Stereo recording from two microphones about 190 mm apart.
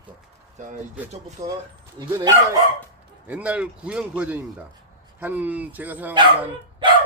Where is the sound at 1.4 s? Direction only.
15° right (ahead or behind).